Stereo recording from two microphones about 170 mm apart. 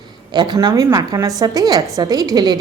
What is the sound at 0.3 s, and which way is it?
A woman's voice, 25° right (ahead or behind).